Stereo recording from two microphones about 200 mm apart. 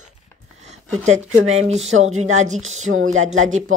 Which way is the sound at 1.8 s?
80° right.